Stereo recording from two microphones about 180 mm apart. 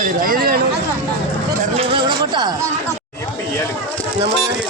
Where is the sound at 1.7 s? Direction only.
30° right (ahead or behind).